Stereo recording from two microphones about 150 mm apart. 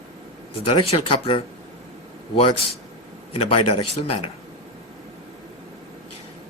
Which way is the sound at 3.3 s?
40° left (ahead or behind).